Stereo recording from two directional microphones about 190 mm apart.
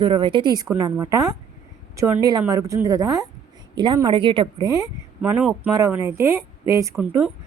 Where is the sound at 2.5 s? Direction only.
15° right (ahead or behind).